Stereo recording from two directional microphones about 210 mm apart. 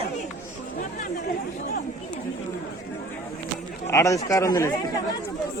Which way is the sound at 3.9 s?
15° left (ahead or behind).